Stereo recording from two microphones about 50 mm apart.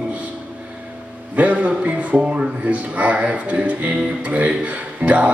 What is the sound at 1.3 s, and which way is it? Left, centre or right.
Music, right.